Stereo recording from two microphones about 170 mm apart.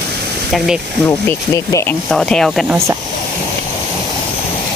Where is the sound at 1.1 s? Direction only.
15° left (ahead or behind).